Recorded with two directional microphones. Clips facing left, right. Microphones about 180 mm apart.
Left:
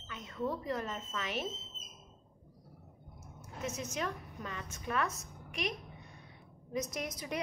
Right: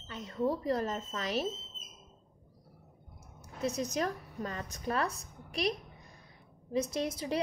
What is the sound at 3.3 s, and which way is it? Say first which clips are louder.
A woman's voice: right 6 dB; 35° right (ahead or behind).